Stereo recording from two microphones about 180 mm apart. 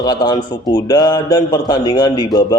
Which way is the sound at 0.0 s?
20° left (ahead or behind).